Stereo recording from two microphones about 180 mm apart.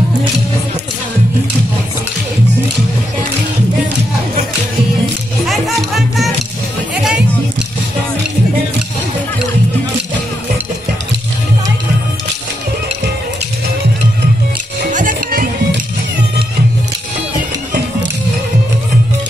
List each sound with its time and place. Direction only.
5.5 s music: centre (ahead or behind)
14.9 s music: 45° right (ahead or behind)